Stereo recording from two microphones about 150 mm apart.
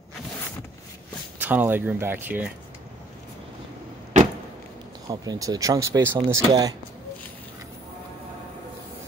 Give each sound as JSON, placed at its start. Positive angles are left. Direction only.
{"t": 1.4, "sound": "speech", "side_deg": -10}
{"t": 5.0, "sound": "speech", "side_deg": -25}